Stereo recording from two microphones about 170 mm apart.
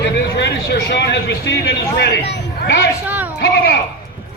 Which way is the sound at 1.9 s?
85° left.